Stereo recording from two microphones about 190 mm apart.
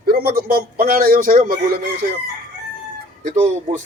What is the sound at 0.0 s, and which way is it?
A man's voice, 55° right (ahead or behind).